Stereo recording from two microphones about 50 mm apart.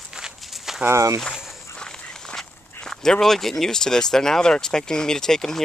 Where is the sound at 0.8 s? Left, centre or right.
Right.